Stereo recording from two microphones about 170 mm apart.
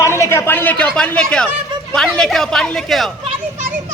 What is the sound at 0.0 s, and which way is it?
Speech, 15° left (ahead or behind).